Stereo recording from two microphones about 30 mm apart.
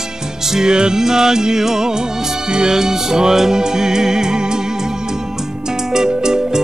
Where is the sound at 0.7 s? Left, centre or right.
Right.